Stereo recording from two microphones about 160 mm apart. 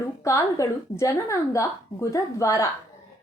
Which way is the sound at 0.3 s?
20° left (ahead or behind).